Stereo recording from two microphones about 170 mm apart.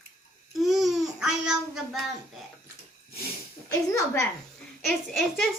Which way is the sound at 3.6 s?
15° left (ahead or behind).